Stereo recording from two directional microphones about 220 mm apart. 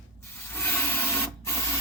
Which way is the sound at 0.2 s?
10° left (ahead or behind).